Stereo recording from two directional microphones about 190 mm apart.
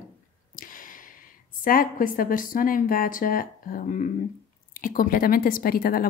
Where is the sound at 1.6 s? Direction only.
45° left (ahead or behind).